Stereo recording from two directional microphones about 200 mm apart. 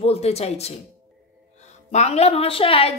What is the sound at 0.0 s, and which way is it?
Speech, 30° left (ahead or behind).